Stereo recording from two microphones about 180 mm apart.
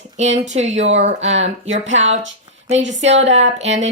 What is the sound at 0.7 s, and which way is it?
Speech, 90° right.